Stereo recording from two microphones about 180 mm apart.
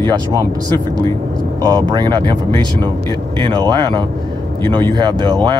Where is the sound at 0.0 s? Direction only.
20° right (ahead or behind).